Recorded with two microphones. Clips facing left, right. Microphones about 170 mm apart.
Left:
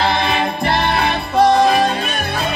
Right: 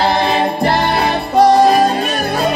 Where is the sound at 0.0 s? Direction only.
35° right (ahead or behind).